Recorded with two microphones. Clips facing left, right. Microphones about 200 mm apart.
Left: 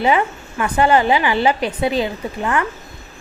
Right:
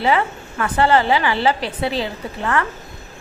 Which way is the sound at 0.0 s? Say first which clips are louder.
Left 2 dB; 15° left (ahead or behind).